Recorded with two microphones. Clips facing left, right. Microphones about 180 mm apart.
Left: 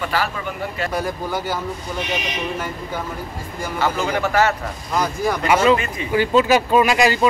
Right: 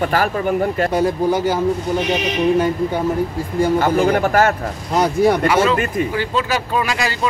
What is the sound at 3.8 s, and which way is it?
Speech, 55° right (ahead or behind).